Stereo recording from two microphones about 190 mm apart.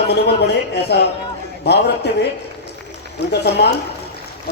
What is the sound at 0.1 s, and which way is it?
Speech, 60° left (ahead or behind).